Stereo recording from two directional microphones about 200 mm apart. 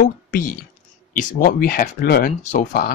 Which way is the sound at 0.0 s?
45° left (ahead or behind).